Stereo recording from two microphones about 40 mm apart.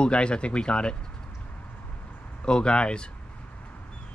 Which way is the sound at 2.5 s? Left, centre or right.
Left.